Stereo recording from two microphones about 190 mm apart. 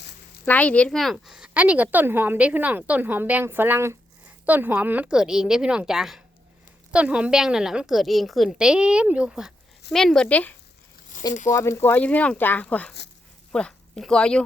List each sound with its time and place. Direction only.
0.4 s a woman's voice: 10° left (ahead or behind)
11.1 s a sound: 40° left (ahead or behind)
11.5 s speech: 15° left (ahead or behind)